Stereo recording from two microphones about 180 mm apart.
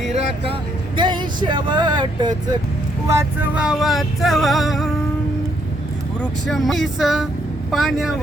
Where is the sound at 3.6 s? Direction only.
5° right (ahead or behind).